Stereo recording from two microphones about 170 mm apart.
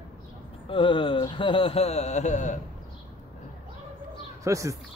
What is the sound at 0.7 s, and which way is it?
A man's voice, 30° left (ahead or behind).